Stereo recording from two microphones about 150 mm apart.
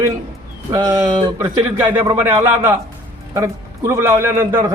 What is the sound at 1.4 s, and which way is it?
A man's voice, 15° right (ahead or behind).